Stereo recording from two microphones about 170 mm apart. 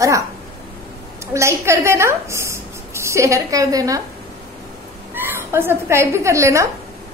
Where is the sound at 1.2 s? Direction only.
15° right (ahead or behind).